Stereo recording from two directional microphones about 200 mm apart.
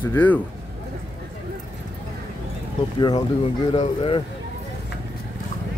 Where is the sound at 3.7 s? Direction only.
25° left (ahead or behind).